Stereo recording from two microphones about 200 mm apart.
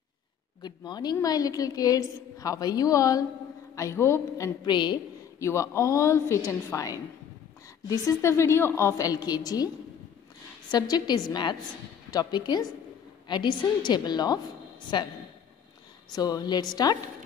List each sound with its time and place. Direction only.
0.6 s a woman's voice: 20° left (ahead or behind)
10.7 s a woman's voice: 20° left (ahead or behind)
16.2 s a woman's voice: 20° left (ahead or behind)